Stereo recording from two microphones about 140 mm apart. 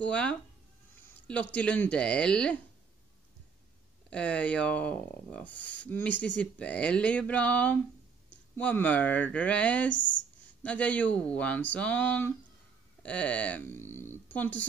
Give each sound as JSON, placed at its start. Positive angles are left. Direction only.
{"t": 0.0, "sound": "speech", "side_deg": 10}
{"t": 4.1, "sound": "speech", "side_deg": 10}